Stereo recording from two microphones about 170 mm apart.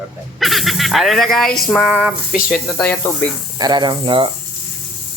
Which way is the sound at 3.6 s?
25° right (ahead or behind).